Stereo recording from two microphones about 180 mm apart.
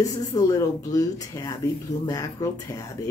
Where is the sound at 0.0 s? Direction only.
20° left (ahead or behind).